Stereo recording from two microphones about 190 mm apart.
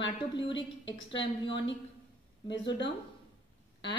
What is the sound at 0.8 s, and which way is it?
Speech, 70° left (ahead or behind).